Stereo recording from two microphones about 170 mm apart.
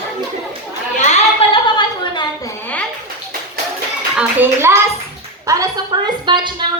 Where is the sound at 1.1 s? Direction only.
30° left (ahead or behind).